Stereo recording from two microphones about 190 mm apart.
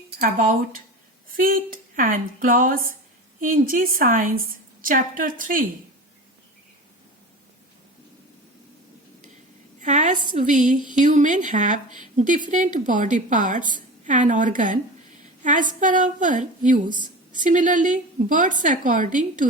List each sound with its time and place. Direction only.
0.2 s a woman's voice: 45° right (ahead or behind)
9.8 s a sound: 40° right (ahead or behind)
10.3 s a woman's voice: 40° right (ahead or behind)
15.8 s a woman's voice: 45° right (ahead or behind)